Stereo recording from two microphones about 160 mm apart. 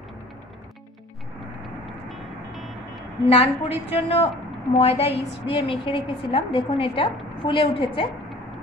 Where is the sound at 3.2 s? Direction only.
40° left (ahead or behind).